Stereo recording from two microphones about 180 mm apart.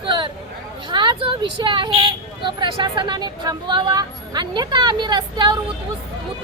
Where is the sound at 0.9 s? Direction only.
25° right (ahead or behind).